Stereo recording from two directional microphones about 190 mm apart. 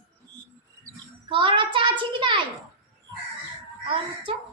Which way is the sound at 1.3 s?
25° right (ahead or behind).